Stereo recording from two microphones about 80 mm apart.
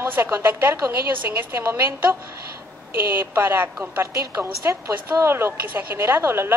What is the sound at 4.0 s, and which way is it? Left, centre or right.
A woman's voice, right.